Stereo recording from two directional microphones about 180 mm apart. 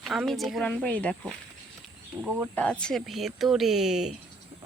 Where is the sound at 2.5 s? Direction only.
5° left (ahead or behind).